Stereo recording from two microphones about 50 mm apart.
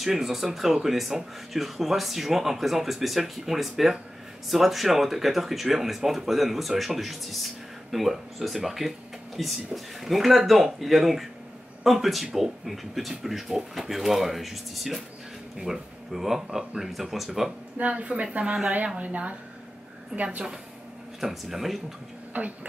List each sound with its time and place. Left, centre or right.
0.0 s speech: centre
17.7 s speech: right
18.9 s speech: right
21.2 s speech: centre
22.3 s speech: right